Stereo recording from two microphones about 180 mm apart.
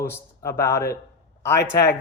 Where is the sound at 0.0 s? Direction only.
15° left (ahead or behind).